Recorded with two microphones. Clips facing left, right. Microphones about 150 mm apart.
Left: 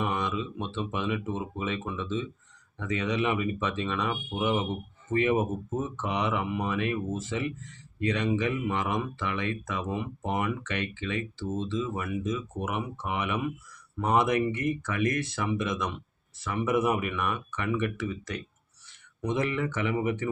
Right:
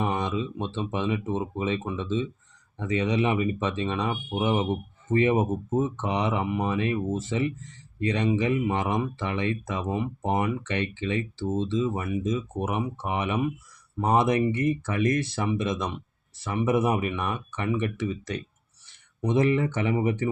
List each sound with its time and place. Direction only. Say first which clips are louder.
0.0 s speech: right 3 dB; 30° right (ahead or behind)